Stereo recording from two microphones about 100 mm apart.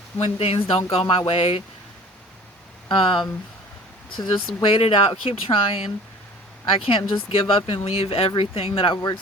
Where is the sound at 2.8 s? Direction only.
55° left (ahead or behind).